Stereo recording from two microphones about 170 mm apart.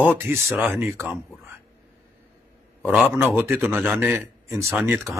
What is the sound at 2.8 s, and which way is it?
A man's voice, 10° right (ahead or behind).